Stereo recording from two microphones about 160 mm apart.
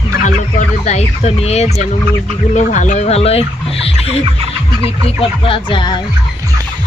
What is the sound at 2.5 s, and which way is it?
Chicken, 50° left (ahead or behind).